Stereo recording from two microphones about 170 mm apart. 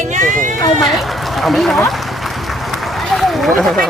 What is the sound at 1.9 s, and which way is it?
Run, centre (ahead or behind).